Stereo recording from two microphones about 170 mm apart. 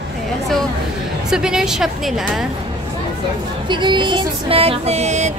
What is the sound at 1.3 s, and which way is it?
Speech, 5° right (ahead or behind).